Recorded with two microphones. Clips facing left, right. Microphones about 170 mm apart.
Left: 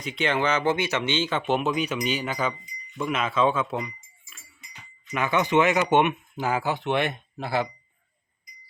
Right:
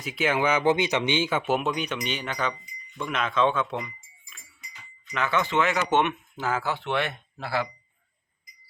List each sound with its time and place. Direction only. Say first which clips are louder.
0.0 s speech: even; 5° right (ahead or behind)
5.1 s speech: left 3 dB; 15° left (ahead or behind)